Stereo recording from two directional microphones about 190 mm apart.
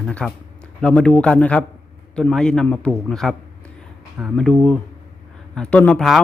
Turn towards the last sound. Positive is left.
turn(degrees=5)  # may be behind; listen again after turning